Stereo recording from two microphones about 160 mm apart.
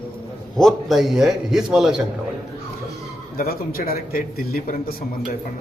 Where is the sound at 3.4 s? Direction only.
70° left (ahead or behind).